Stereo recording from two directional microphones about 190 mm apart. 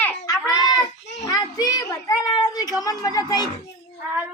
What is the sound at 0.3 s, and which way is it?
Child singing, 20° left (ahead or behind).